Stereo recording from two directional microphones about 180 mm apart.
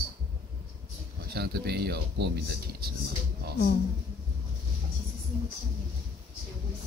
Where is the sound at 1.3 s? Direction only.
60° right (ahead or behind).